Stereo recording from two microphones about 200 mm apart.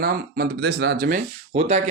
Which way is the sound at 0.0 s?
50° right (ahead or behind).